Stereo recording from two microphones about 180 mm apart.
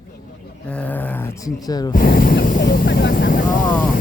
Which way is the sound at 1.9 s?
55° left (ahead or behind).